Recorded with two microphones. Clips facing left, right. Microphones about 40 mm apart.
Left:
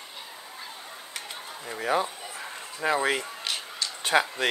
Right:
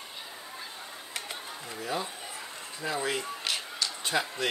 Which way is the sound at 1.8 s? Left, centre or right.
Left.